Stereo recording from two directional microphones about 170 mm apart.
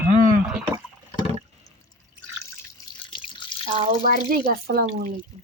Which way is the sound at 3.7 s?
35° right (ahead or behind).